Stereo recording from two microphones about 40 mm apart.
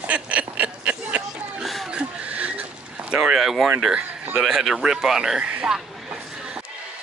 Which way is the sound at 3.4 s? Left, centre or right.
Centre.